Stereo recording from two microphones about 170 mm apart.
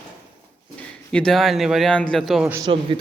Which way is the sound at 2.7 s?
30° right (ahead or behind).